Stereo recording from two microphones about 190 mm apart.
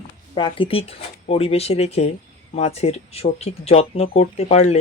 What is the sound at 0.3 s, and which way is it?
Speech, 25° left (ahead or behind).